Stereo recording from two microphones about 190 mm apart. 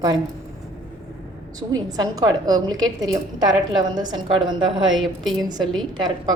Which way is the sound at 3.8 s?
20° right (ahead or behind).